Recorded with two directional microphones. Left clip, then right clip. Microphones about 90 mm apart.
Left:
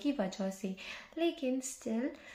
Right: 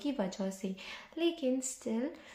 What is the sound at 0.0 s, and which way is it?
Speech, 35° right (ahead or behind).